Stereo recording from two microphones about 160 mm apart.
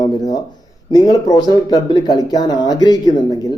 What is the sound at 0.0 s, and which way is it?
Speech, 25° left (ahead or behind).